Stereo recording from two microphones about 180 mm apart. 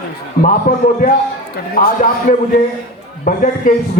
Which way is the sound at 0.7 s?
45° left (ahead or behind).